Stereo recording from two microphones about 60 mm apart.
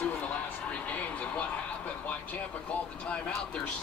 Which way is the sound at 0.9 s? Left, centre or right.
Left.